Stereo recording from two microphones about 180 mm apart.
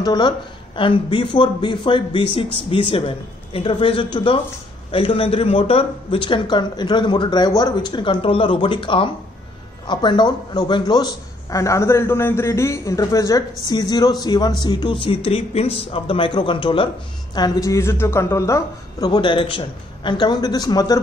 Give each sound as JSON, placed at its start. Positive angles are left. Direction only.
{"t": 0.0, "sound": "a woman's voice", "side_deg": 25}